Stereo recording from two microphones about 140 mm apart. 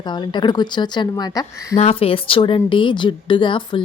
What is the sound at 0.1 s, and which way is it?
Speech, 35° left (ahead or behind).